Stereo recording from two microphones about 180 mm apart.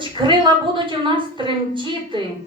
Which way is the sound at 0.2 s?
25° right (ahead or behind).